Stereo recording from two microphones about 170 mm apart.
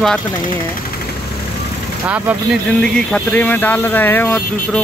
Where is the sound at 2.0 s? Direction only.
10° right (ahead or behind).